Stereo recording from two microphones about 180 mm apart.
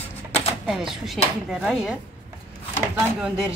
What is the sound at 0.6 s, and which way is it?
Speech, centre (ahead or behind).